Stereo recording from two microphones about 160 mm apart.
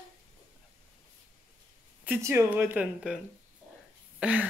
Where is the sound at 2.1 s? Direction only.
15° right (ahead or behind).